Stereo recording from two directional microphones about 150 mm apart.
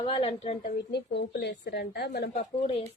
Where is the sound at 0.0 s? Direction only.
40° left (ahead or behind).